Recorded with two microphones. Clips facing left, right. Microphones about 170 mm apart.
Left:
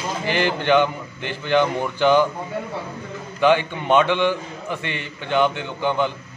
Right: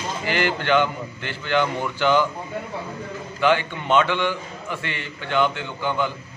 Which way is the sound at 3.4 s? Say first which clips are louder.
Left 3 dB; 15° left (ahead or behind).